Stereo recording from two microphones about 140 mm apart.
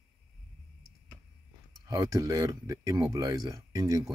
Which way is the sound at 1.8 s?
25° right (ahead or behind).